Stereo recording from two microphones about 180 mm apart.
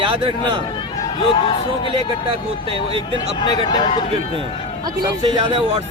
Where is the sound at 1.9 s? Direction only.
30° right (ahead or behind).